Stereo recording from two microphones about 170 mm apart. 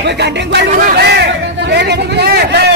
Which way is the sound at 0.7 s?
55° right (ahead or behind).